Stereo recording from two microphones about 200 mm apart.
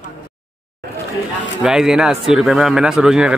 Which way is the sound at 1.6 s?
Centre (ahead or behind).